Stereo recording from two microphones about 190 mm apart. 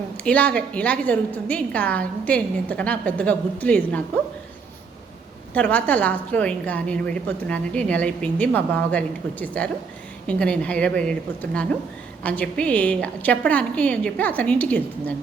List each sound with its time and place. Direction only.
0.3 s a woman's voice: 5° left (ahead or behind)
5.5 s a woman's voice: 5° left (ahead or behind)
12.2 s a woman's voice: 5° left (ahead or behind)